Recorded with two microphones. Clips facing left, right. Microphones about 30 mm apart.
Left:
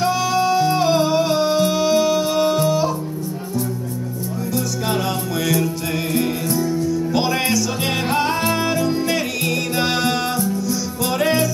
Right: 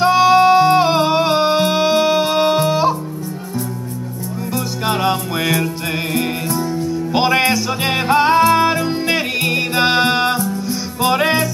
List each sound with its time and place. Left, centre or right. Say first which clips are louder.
0.0 s music: right 8 dB; right
4.6 s music: right 3 dB; right